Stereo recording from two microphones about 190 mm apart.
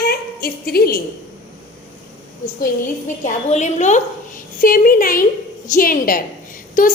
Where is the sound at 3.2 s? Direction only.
40° left (ahead or behind).